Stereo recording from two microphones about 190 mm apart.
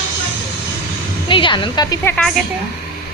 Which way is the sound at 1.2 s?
25° left (ahead or behind).